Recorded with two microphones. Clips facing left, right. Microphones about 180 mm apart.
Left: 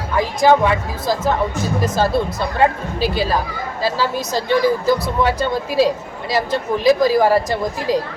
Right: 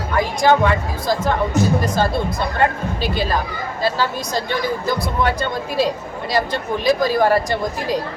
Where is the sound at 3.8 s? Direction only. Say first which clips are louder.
Left 1 dB; 5° left (ahead or behind).